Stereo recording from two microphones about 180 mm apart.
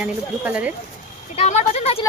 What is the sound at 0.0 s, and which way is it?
Speech, 5° right (ahead or behind).